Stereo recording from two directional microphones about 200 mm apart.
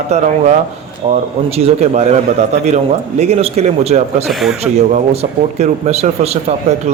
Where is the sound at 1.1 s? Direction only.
30° right (ahead or behind).